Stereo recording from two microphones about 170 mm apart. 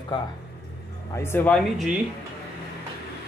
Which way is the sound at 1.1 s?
15° left (ahead or behind).